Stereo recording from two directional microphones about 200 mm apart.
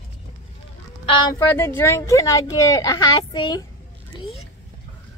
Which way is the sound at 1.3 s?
10° left (ahead or behind).